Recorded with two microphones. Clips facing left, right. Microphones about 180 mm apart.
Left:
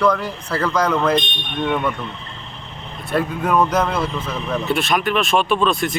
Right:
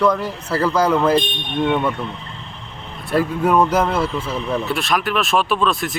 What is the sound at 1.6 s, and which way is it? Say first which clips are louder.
Speech: right 1 dB; 25° right (ahead or behind).